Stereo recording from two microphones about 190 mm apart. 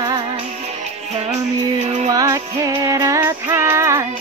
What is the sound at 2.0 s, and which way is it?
Music, 20° right (ahead or behind).